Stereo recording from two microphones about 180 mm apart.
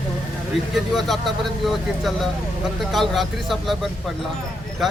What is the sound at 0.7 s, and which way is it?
Speech, centre (ahead or behind).